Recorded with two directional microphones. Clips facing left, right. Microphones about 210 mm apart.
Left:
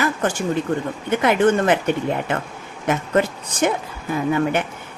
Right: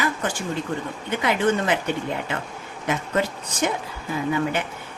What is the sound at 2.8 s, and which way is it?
Speech, 50° left (ahead or behind).